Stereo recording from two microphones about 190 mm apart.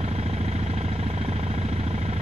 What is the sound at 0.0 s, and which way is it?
Vehicle, 35° right (ahead or behind).